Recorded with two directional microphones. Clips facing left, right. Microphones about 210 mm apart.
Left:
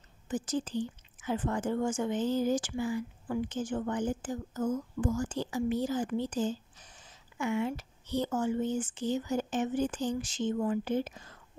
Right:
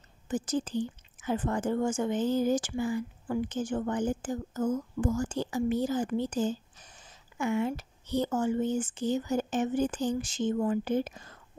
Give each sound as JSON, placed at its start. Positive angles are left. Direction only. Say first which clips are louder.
{"t": 0.3, "sound": "speech", "louder": "right 2 dB", "side_deg": -45}